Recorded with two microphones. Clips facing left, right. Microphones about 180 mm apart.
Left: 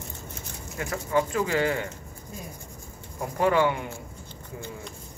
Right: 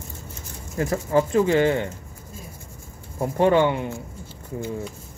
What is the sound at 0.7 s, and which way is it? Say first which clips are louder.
Speech: right 5 dB; 30° right (ahead or behind).